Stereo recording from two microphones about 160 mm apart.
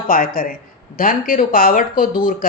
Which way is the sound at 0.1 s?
60° left (ahead or behind).